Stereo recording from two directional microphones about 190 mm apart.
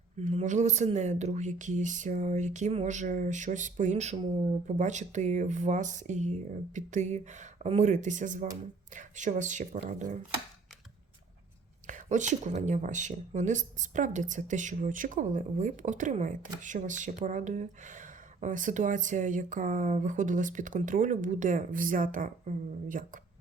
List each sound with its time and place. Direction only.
0.2 s speech: 35° right (ahead or behind)
11.9 s speech: 40° right (ahead or behind)